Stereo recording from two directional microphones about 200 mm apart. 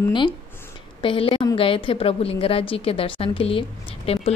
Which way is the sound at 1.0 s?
25° left (ahead or behind).